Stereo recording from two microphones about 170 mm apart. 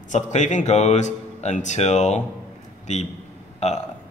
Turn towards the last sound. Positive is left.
turn(degrees=40)  # may be behind; listen again after turning